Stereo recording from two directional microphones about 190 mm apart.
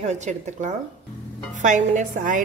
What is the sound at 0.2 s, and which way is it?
A woman's voice, 40° right (ahead or behind).